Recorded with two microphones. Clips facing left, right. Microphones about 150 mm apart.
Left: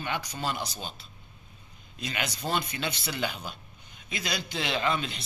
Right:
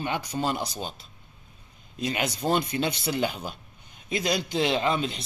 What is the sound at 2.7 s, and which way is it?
Speech, 35° right (ahead or behind).